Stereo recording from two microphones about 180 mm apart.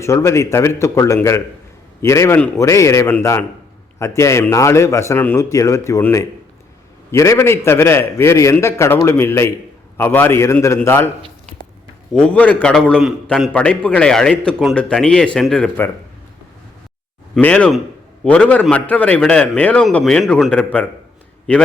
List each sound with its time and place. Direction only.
0.0 s a man's voice: 15° left (ahead or behind)
12.1 s a man's voice: 10° left (ahead or behind)
17.3 s a man's voice: 5° left (ahead or behind)